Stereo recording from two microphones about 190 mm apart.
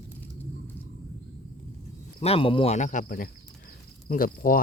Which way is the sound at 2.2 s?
30° left (ahead or behind).